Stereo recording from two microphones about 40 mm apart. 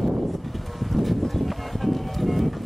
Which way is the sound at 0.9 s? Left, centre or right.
Centre.